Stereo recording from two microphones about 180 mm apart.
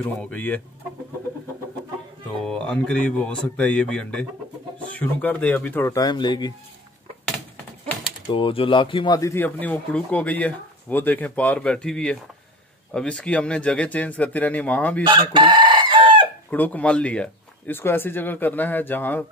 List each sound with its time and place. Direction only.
0.0 s speech: 10° left (ahead or behind)
2.4 s speech: 5° left (ahead or behind); by 6.5 s 25° left (ahead or behind)
8.3 s speech: 30° left (ahead or behind); by 15.0 s 10° left (ahead or behind)
15.0 s chicken: 25° right (ahead or behind)
16.4 s speech: 10° left (ahead or behind)